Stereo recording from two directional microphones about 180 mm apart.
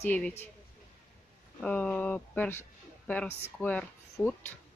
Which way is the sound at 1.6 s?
10° left (ahead or behind).